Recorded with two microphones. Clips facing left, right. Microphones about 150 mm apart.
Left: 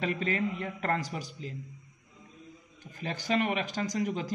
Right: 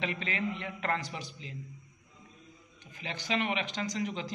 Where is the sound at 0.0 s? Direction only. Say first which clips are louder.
Left 4 dB; 45° left (ahead or behind).